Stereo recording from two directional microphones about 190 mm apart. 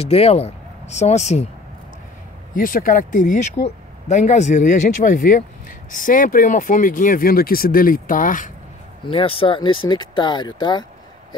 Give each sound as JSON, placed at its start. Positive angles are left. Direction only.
{"t": 0.0, "sound": "speech", "side_deg": 30}
{"t": 2.5, "sound": "speech", "side_deg": 45}
{"t": 9.0, "sound": "speech", "side_deg": 30}